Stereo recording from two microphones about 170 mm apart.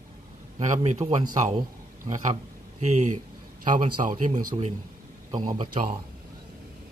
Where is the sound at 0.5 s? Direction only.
40° right (ahead or behind).